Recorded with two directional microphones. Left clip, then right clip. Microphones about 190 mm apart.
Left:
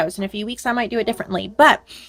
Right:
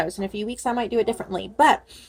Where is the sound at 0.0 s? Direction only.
40° left (ahead or behind).